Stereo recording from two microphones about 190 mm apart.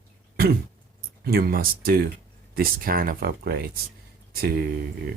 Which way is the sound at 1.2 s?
55° right (ahead or behind).